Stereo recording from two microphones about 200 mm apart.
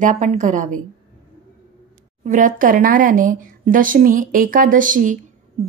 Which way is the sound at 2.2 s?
40° right (ahead or behind).